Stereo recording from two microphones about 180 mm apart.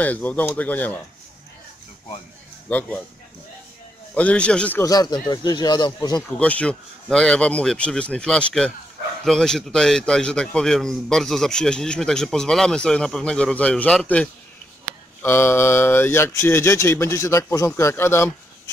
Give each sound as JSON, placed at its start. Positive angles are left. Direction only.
{"t": 0.0, "sound": "speech", "side_deg": 10}
{"t": 4.1, "sound": "speech", "side_deg": 5}
{"t": 6.2, "sound": "a man's voice", "side_deg": 5}